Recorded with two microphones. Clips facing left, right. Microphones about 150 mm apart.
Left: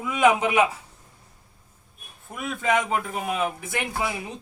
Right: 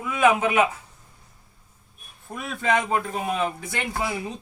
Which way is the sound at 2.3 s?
5° left (ahead or behind).